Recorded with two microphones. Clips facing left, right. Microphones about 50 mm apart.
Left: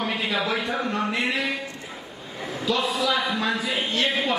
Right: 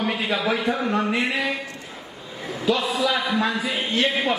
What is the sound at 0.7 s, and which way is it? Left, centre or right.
Speech, centre.